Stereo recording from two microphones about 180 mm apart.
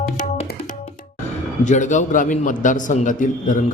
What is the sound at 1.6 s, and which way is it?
A man's voice, 45° left (ahead or behind).